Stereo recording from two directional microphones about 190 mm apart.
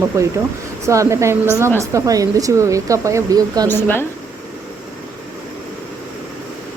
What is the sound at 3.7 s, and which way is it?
Speech, 10° left (ahead or behind).